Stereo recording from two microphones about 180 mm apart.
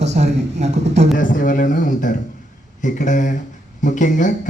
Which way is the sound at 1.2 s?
45° left (ahead or behind).